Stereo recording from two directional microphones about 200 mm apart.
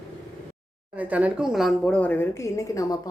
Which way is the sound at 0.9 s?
5° right (ahead or behind).